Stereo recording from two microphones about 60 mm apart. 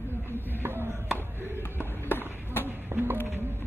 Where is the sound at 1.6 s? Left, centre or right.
Left.